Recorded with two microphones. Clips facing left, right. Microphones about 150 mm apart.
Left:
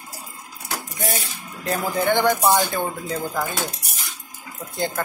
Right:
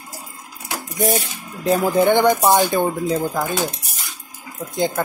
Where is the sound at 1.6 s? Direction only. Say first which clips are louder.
Right 7 dB; 15° right (ahead or behind).